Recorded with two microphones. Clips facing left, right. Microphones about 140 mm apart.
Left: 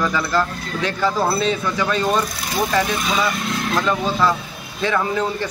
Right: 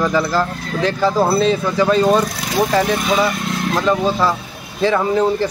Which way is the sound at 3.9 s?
30° right (ahead or behind).